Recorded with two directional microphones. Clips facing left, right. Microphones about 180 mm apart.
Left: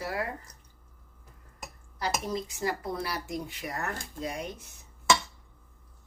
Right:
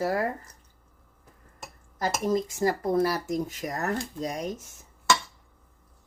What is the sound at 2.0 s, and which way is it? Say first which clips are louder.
Speech: right 6 dB; 45° right (ahead or behind).